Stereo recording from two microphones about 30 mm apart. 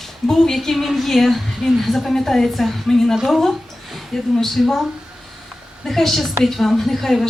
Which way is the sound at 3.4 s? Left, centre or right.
Centre.